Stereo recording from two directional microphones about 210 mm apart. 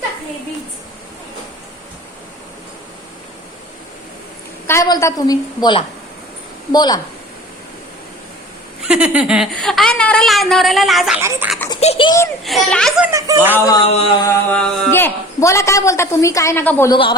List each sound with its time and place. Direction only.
4.6 s a woman's voice: 15° left (ahead or behind)
6.7 s a sound: 20° left (ahead or behind)
8.8 s a woman's voice: 5° right (ahead or behind)
11.2 s speech: 10° right (ahead or behind)
11.8 s a sound: 25° left (ahead or behind)
12.5 s a woman's voice: centre (ahead or behind)
13.1 s speech: 15° right (ahead or behind)
13.7 s a sound: 30° left (ahead or behind)
14.5 s a woman's voice: 10° left (ahead or behind)